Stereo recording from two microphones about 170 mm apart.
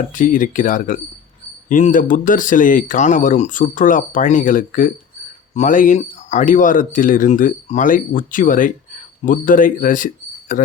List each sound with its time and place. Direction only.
0.1 s speech: 50° left (ahead or behind)